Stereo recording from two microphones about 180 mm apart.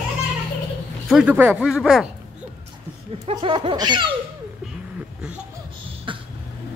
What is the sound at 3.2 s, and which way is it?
Speech, 30° right (ahead or behind).